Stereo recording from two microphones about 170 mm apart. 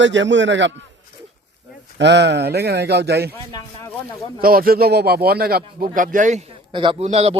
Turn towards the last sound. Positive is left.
turn(degrees=-35)  # may be behind; listen again after turning